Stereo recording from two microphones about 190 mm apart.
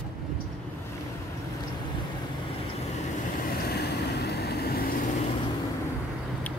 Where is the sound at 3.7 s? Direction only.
60° left (ahead or behind).